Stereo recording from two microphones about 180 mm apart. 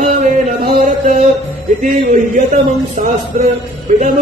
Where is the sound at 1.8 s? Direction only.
45° right (ahead or behind).